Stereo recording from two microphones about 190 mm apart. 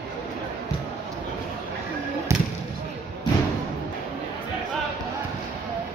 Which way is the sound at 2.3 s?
15° right (ahead or behind).